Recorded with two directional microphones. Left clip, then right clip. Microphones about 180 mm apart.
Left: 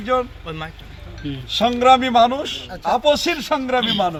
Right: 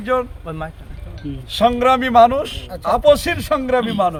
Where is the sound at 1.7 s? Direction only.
20° right (ahead or behind).